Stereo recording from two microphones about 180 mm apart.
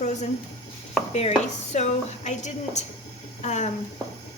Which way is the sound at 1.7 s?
40° left (ahead or behind).